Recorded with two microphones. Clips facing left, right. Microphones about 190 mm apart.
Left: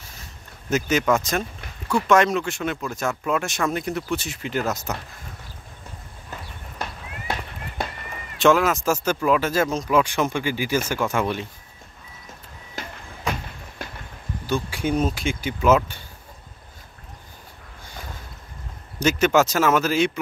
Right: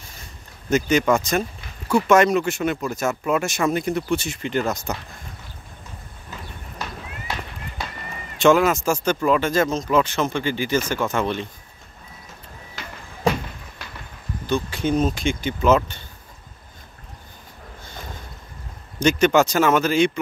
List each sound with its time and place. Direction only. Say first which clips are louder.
0.0 s a sound: right 1 dB; 5° left (ahead or behind)
1.9 s speech: right 2 dB; 5° right (ahead or behind)
6.3 s horse: even; 55° left (ahead or behind)
6.8 s run: even; 55° left (ahead or behind)
8.4 s speech: right 2 dB; centre (ahead or behind)
12.8 s music: left 3 dB; 45° left (ahead or behind)
13.2 s a sound: right 7 dB; 35° right (ahead or behind)
13.8 s a sound: left 6 dB; 50° left (ahead or behind)
14.4 s speech: right 2 dB; 10° left (ahead or behind)
18.9 s speech: right 2 dB; 5° left (ahead or behind)